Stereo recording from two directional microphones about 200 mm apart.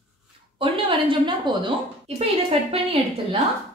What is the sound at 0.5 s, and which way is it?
A woman's voice, 25° right (ahead or behind).